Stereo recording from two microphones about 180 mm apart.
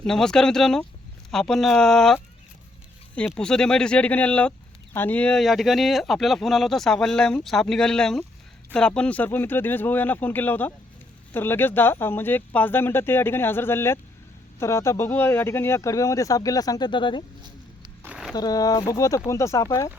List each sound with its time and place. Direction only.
0.0 s speech: 5° left (ahead or behind)
3.2 s speech: 5° left (ahead or behind); by 17.2 s 25° left (ahead or behind)
18.0 s a sound: 5° right (ahead or behind)
18.3 s speech: 20° left (ahead or behind)